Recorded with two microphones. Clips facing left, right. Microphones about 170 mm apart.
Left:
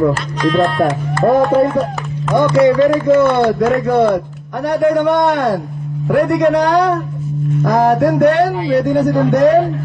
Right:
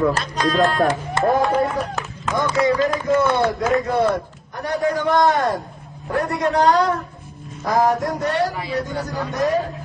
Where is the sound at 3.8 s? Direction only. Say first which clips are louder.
Left 6 dB; 65° left (ahead or behind).